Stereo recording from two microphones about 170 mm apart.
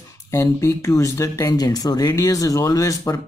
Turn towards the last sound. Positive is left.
turn(degrees=20)  # may be behind; listen again after turning